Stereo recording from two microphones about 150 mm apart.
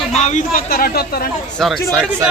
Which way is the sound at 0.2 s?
55° left (ahead or behind).